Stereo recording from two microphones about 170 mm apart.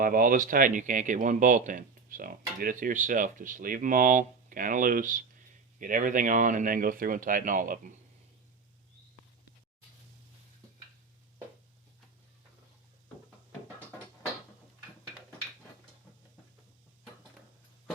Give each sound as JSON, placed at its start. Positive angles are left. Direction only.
{"t": 0.0, "sound": "speech", "side_deg": -55}